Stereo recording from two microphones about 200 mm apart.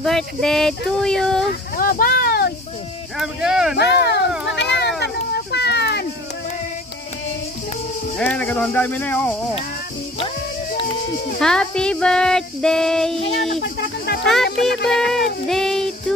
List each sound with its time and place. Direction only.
0.0 s music: centre (ahead or behind)
1.5 s speech: 45° left (ahead or behind)
3.2 s music: 5° right (ahead or behind)
3.7 s speech: 55° left (ahead or behind)
4.5 s a sound: 60° left (ahead or behind)
8.2 s speech: 5° left (ahead or behind)
11.3 s music: 5° left (ahead or behind)
13.7 s speech: 55° left (ahead or behind)
14.2 s music: centre (ahead or behind)
15.4 s a sound: centre (ahead or behind)